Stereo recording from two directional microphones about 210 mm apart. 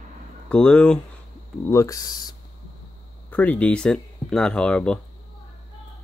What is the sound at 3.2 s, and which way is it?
Speech, 10° left (ahead or behind).